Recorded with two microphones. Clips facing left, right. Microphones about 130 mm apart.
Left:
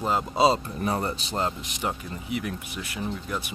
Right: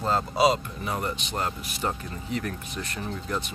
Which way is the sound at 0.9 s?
35° left (ahead or behind).